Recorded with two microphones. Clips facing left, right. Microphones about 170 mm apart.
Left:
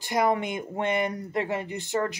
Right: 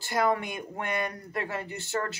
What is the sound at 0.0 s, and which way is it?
A woman's voice, 20° left (ahead or behind).